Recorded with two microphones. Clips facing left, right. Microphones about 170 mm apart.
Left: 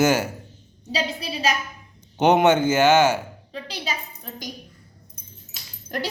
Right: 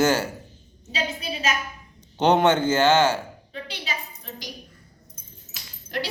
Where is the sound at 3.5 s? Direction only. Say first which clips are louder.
Left 4 dB; 40° left (ahead or behind).